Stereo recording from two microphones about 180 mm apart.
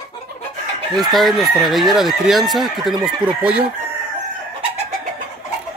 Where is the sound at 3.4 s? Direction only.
5° right (ahead or behind).